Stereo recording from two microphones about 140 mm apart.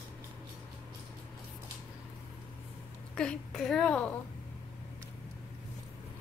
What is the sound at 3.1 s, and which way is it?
A woman's voice, 5° left (ahead or behind).